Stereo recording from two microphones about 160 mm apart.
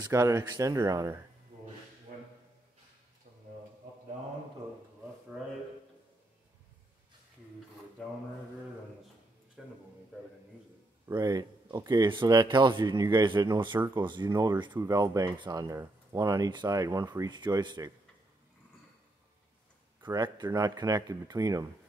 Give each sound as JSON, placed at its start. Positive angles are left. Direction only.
{"t": 0.0, "sound": "speech", "side_deg": -20}
{"t": 8.0, "sound": "mantra", "side_deg": 5}
{"t": 9.6, "sound": "a sound", "side_deg": 0}
{"t": 11.1, "sound": "speech", "side_deg": -25}
{"t": 20.0, "sound": "speech", "side_deg": -25}